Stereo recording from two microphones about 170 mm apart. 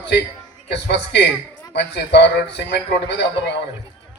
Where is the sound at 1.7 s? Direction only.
85° left.